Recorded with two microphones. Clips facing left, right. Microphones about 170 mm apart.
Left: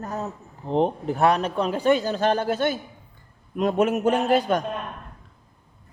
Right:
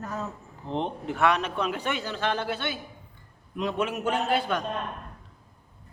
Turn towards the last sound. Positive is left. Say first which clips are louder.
# left 6 dB
turn(degrees=40)  # may be behind; listen again after turning